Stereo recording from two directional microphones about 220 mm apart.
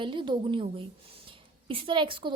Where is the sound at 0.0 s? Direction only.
20° right (ahead or behind).